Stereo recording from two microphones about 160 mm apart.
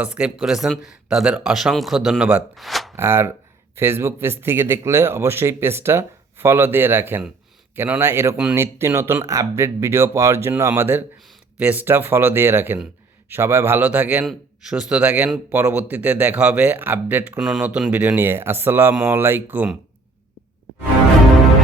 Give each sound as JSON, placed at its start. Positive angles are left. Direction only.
{"t": 0.0, "sound": "speech", "side_deg": -10}
{"t": 2.9, "sound": "speech", "side_deg": -15}